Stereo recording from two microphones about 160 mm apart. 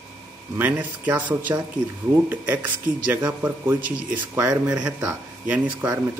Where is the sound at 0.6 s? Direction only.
10° right (ahead or behind).